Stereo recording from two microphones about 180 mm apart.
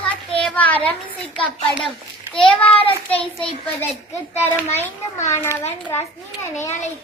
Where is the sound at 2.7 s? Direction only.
30° left (ahead or behind).